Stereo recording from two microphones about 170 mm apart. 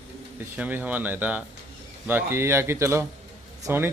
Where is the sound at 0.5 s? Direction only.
10° right (ahead or behind).